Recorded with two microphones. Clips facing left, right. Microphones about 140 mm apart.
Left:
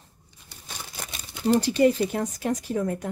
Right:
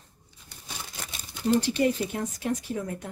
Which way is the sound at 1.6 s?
35° left (ahead or behind).